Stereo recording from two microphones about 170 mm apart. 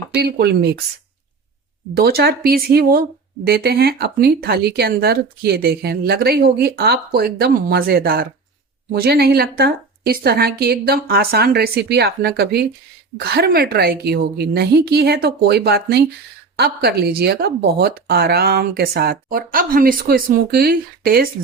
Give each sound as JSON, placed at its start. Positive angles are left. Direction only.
{"t": 0.2, "sound": "speech", "side_deg": -70}
{"t": 2.0, "sound": "speech", "side_deg": -65}